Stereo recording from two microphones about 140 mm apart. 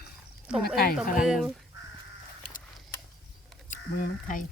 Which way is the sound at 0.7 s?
90° left.